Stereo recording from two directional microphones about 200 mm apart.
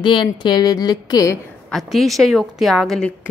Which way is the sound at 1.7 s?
Centre (ahead or behind).